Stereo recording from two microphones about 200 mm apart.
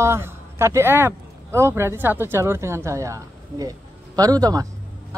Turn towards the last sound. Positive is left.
turn(degrees=-20)  # may be behind; listen again after turning